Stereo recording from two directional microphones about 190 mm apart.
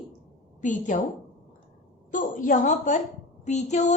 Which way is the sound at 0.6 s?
40° left (ahead or behind).